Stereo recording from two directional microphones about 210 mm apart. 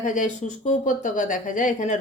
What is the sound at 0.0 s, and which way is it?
Speech, 35° left (ahead or behind).